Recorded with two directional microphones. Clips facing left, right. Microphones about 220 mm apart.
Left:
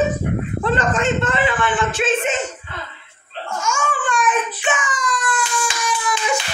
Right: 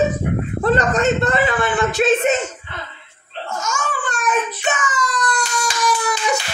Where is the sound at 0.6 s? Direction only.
40° right (ahead or behind).